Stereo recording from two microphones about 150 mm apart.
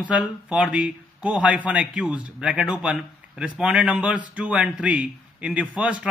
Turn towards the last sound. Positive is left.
turn(degrees=-10)  # may be behind; listen again after turning